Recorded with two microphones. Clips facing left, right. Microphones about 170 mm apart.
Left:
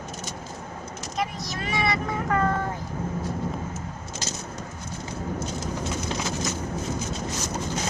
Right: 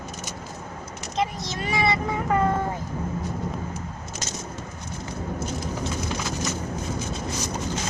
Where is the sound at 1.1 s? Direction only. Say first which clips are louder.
Right 3 dB; 25° right (ahead or behind).